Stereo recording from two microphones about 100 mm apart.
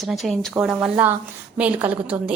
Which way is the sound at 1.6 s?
20° right (ahead or behind).